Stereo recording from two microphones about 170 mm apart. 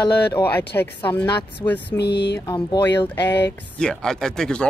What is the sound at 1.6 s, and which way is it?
Speech, 10° left (ahead or behind).